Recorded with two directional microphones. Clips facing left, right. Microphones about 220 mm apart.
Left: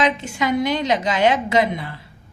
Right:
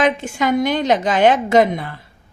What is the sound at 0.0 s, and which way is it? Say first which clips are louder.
A woman's voice: right 3 dB; 50° right (ahead or behind).